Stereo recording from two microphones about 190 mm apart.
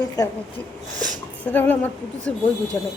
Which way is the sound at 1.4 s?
10° left (ahead or behind).